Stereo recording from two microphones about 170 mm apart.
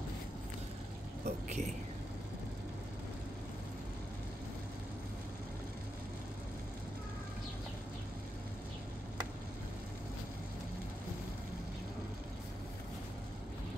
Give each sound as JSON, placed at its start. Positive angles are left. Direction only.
{"t": 1.2, "sound": "speech", "side_deg": -45}